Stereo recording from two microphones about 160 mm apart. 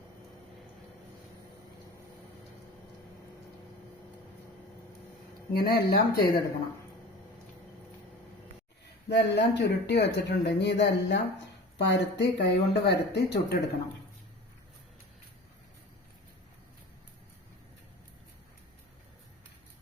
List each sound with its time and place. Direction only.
5.5 s speech: 70° left (ahead or behind)
9.0 s speech: 90° left